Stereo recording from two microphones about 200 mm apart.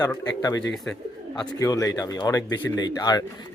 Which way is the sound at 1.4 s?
15° left (ahead or behind).